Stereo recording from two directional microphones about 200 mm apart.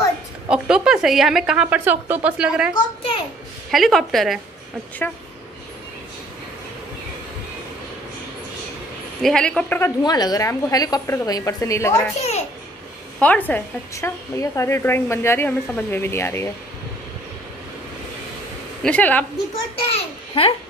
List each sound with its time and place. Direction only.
0.5 s a woman's voice: 5° right (ahead or behind)
3.7 s a woman's voice: centre (ahead or behind)
9.2 s a woman's voice: 5° left (ahead or behind)
12.2 s a child's voice: 35° left (ahead or behind)
13.2 s a woman's voice: 10° left (ahead or behind)
18.8 s a woman's voice: 5° left (ahead or behind)
19.9 s a child's voice: 30° left (ahead or behind)